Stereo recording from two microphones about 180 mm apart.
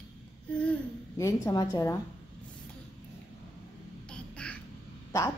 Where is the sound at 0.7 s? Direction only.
15° left (ahead or behind).